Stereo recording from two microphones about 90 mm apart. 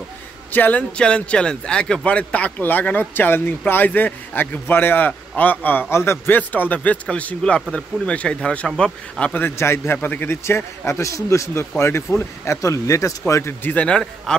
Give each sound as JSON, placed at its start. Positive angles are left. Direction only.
{"t": 0.5, "sound": "speech", "side_deg": 20}
{"t": 9.6, "sound": "a man's voice", "side_deg": 30}
{"t": 13.7, "sound": "speech", "side_deg": 15}